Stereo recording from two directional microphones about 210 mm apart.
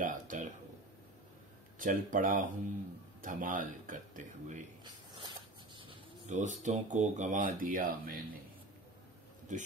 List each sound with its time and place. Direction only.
0.0 s a sound: 40° right (ahead or behind)
1.8 s speech: 40° right (ahead or behind)
5.8 s bird: 25° right (ahead or behind)
6.3 s speech: 35° right (ahead or behind)
9.5 s speech: 35° right (ahead or behind)